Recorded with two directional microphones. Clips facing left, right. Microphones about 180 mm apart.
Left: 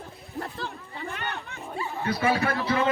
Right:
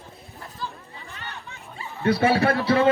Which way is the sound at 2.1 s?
30° right (ahead or behind).